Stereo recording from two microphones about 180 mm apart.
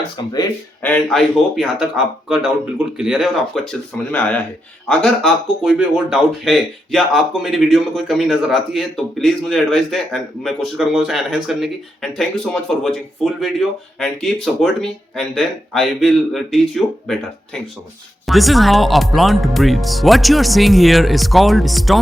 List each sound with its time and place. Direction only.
0.2 s speech: 25° left (ahead or behind)
0.8 s speech: 10° left (ahead or behind)